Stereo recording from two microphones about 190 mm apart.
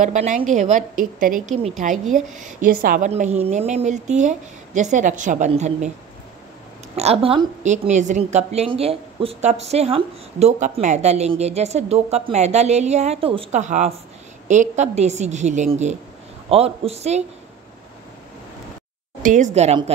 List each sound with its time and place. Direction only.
0.0 s a woman's voice: 40° right (ahead or behind)
3.1 s a woman's voice: 35° right (ahead or behind)
7.0 s a woman's voice: 30° right (ahead or behind)
19.2 s a woman's voice: 40° right (ahead or behind)